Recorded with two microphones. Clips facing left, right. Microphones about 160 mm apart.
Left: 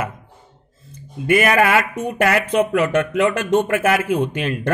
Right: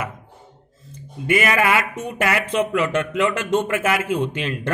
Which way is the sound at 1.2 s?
45° left (ahead or behind).